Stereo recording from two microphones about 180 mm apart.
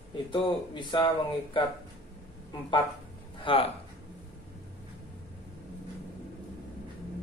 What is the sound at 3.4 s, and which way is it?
Speech, 30° left (ahead or behind).